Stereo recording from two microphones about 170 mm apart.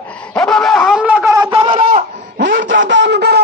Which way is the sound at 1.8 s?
55° right (ahead or behind).